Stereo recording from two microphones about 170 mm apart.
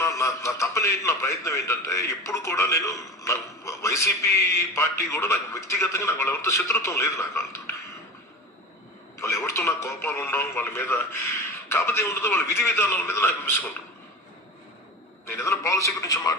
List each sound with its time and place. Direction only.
0.0 s a man's voice: 20° left (ahead or behind)
9.1 s a man's voice: 15° left (ahead or behind)
15.3 s a man's voice: 15° left (ahead or behind)